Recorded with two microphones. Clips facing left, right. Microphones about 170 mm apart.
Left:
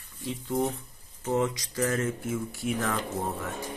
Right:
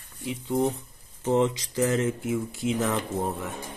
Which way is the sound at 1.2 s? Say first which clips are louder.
Right 4 dB; 25° right (ahead or behind).